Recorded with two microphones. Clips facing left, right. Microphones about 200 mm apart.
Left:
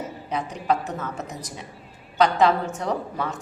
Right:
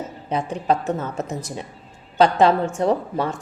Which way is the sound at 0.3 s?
30° right (ahead or behind).